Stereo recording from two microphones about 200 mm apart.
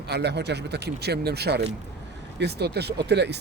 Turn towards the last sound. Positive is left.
turn(degrees=-60)  # may be behind; listen again after turning